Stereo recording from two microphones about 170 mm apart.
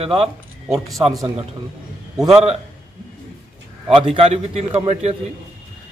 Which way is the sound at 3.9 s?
35° right (ahead or behind).